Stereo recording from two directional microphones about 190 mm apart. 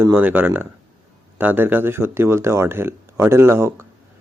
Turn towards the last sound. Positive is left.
turn(degrees=-15)  # may be behind; listen again after turning